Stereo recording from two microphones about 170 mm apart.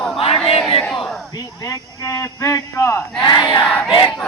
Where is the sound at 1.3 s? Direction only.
20° left (ahead or behind).